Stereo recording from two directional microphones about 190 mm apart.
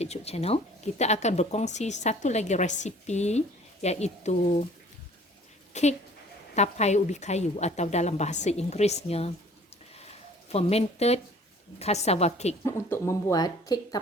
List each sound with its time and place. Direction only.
0.0 s speech: 35° left (ahead or behind)
5.7 s speech: 35° left (ahead or behind)
10.1 s a sound: 35° left (ahead or behind)
11.8 s speech: 35° left (ahead or behind)
12.6 s speech: 15° left (ahead or behind)